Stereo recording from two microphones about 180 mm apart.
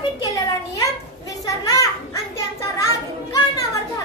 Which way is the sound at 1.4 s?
20° left (ahead or behind).